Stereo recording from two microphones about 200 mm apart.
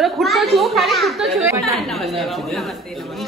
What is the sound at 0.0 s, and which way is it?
A child's voice, centre (ahead or behind).